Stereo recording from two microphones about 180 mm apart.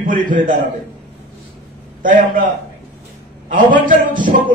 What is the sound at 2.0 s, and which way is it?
Speech, 50° right (ahead or behind).